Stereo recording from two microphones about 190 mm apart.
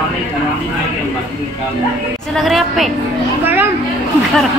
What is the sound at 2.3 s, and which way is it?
Speech, centre (ahead or behind).